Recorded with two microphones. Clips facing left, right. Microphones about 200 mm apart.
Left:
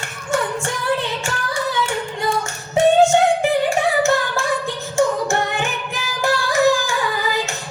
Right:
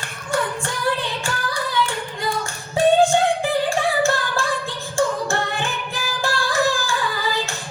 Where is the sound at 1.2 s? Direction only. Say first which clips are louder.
Left 2 dB; 25° left (ahead or behind).